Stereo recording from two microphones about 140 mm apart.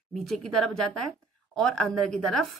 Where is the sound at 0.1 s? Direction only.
5° left (ahead or behind).